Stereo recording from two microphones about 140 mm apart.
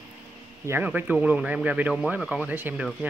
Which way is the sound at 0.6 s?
15° right (ahead or behind).